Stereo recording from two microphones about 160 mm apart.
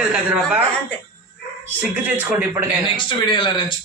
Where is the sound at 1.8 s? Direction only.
10° right (ahead or behind).